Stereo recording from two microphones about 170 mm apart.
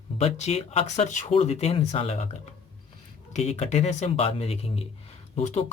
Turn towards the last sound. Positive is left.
turn(degrees=40)  # may be behind; listen again after turning